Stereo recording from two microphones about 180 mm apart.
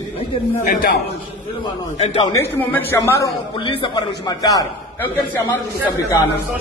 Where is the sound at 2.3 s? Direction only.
15° left (ahead or behind).